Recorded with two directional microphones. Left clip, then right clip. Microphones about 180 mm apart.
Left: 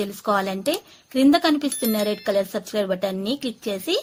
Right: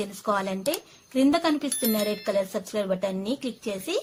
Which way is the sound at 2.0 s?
25° left (ahead or behind).